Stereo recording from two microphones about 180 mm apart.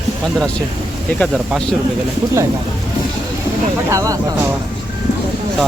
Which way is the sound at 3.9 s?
15° right (ahead or behind).